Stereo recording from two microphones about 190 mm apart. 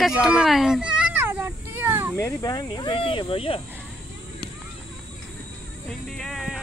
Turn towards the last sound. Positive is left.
turn(degrees=0)  # may be behind; listen again after turning